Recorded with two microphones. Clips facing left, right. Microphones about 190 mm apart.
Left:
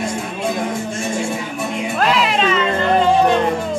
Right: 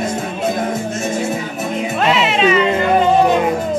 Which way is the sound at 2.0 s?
Centre (ahead or behind).